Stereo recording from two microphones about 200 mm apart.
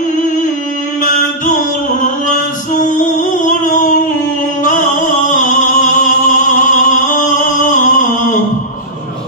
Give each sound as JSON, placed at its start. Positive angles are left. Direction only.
{"t": 1.0, "sound": "music", "side_deg": 40}
{"t": 2.8, "sound": "a sound", "side_deg": 40}
{"t": 4.6, "sound": "music", "side_deg": 40}